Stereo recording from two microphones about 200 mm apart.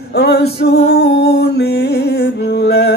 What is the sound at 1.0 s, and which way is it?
Music, 55° left (ahead or behind).